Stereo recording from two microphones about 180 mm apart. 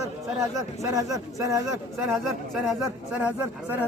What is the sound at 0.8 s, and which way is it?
Speech, 15° right (ahead or behind).